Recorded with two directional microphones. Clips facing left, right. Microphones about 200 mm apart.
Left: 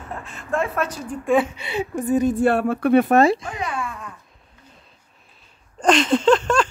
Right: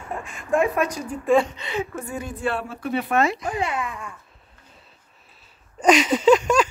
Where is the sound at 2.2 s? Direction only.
45° left (ahead or behind).